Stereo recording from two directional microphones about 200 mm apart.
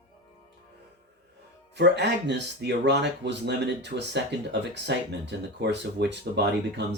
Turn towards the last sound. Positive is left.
turn(degrees=-55)  # may be behind; listen again after turning